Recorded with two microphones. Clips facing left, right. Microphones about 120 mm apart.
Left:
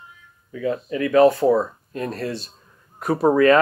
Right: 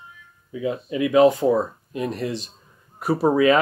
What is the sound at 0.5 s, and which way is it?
Speech, 15° right (ahead or behind).